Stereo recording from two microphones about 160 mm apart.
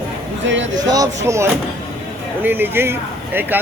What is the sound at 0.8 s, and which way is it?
Speech, 25° right (ahead or behind).